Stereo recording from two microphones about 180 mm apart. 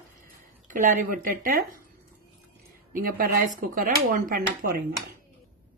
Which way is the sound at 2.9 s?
55° right (ahead or behind).